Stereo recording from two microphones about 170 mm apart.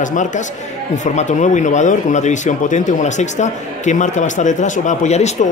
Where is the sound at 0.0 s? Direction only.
50° left (ahead or behind).